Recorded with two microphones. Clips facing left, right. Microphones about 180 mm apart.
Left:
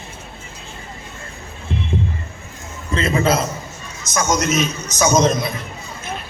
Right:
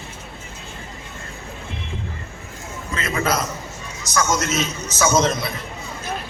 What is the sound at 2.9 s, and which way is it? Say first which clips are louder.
A man's voice: left 5 dB; 30° left (ahead or behind).